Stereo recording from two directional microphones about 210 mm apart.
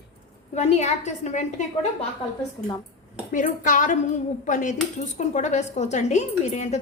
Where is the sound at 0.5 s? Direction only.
30° left (ahead or behind).